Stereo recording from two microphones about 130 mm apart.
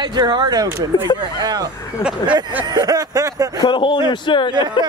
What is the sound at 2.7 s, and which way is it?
Speech, 30° right (ahead or behind).